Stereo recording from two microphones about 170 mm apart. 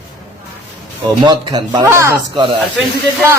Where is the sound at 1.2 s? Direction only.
25° right (ahead or behind).